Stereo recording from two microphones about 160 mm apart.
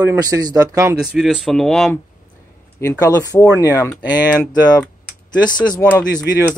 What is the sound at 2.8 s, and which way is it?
Speech, 20° left (ahead or behind).